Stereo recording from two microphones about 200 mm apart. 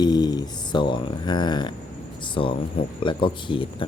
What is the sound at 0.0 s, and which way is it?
Speech, 20° left (ahead or behind).